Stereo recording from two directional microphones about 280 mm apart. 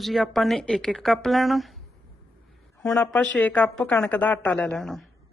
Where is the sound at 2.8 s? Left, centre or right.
Centre.